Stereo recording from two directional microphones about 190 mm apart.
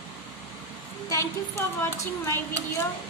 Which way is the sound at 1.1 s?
15° left (ahead or behind).